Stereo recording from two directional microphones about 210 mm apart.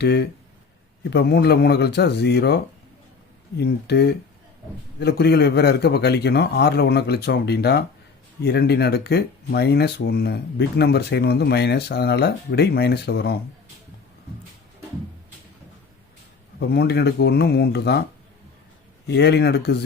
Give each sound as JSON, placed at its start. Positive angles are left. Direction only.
{"t": 0.0, "sound": "speech", "side_deg": 50}
{"t": 3.6, "sound": "speech", "side_deg": 50}
{"t": 16.6, "sound": "speech", "side_deg": 50}
{"t": 19.0, "sound": "speech", "side_deg": 50}